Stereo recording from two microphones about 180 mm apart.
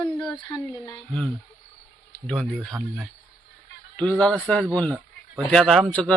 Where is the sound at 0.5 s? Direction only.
20° left (ahead or behind).